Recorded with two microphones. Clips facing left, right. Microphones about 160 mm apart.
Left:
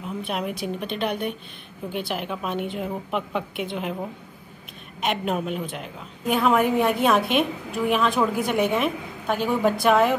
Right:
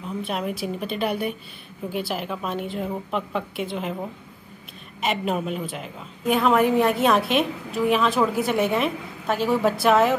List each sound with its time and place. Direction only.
0.0 s a woman's voice: centre (ahead or behind)